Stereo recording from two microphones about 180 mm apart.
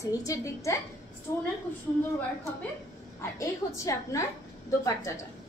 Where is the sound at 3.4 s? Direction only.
15° left (ahead or behind).